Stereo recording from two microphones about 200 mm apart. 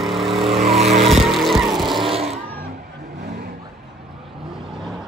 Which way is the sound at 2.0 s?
30° right (ahead or behind).